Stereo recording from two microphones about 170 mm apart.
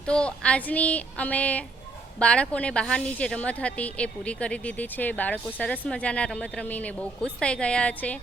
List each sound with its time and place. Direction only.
0.1 s a woman's voice: 5° left (ahead or behind)